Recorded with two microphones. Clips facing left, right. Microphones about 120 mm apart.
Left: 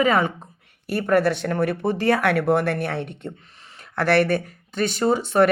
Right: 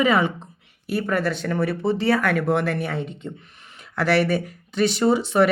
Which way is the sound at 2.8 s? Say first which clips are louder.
Left 1 dB; 65° left (ahead or behind).